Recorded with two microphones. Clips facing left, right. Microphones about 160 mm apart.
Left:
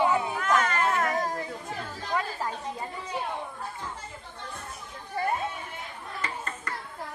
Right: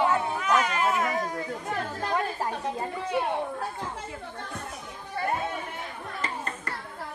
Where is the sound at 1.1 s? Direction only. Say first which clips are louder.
Left 1 dB; 40° left (ahead or behind).